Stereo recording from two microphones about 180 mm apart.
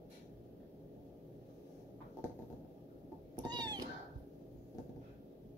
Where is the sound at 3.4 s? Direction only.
25° right (ahead or behind).